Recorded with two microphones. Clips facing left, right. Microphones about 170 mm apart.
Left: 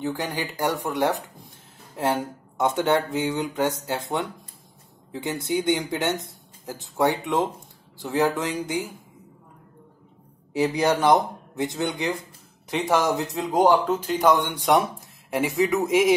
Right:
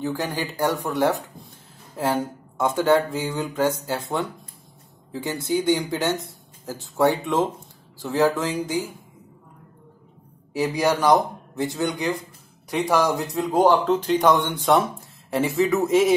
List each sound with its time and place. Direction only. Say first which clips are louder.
0.0 s speech: right 1 dB; 15° left (ahead or behind)
2.5 s speech: right 2 dB; 20° left (ahead or behind)
10.6 s speech: even; 20° left (ahead or behind)